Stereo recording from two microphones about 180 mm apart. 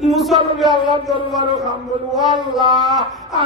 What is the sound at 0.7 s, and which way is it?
Speech, 25° left (ahead or behind).